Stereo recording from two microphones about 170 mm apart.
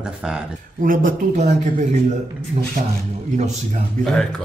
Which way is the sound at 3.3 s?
45° right (ahead or behind).